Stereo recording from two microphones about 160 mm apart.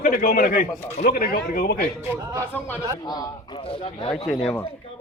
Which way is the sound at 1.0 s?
70° left (ahead or behind).